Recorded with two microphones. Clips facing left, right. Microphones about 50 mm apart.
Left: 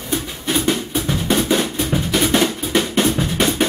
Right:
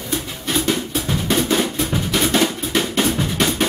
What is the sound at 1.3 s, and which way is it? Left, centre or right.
Drum, centre.